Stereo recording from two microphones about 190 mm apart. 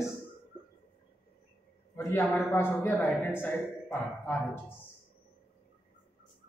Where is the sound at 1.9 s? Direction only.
10° left (ahead or behind).